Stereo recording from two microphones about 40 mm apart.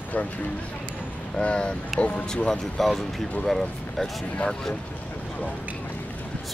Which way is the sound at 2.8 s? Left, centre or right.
Centre.